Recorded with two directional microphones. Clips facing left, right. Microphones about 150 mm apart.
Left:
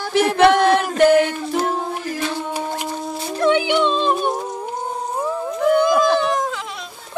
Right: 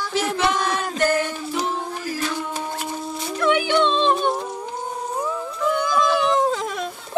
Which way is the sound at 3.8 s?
5° left (ahead or behind).